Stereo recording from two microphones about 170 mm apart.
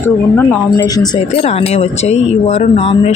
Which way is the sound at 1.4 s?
40° left (ahead or behind).